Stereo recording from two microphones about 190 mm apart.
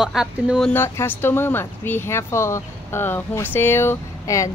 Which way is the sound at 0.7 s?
10° left (ahead or behind).